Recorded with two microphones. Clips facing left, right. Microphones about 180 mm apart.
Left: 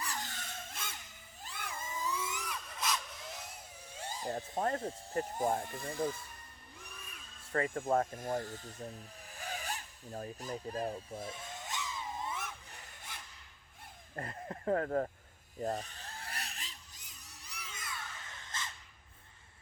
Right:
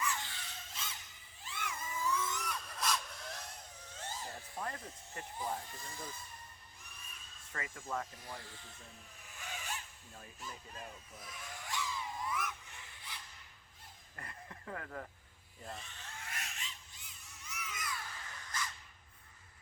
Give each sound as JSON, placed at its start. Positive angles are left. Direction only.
{"t": 0.0, "sound": "a sound", "side_deg": 40}
{"t": 1.5, "sound": "cat", "side_deg": 35}
{"t": 4.8, "sound": "speech", "side_deg": 35}
{"t": 7.7, "sound": "speech", "side_deg": 50}
{"t": 9.3, "sound": "zipper", "side_deg": 35}
{"t": 14.2, "sound": "speech", "side_deg": 45}
{"t": 15.6, "sound": "a sound", "side_deg": 40}